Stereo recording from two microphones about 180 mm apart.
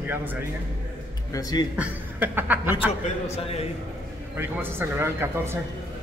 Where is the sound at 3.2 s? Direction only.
35° left (ahead or behind).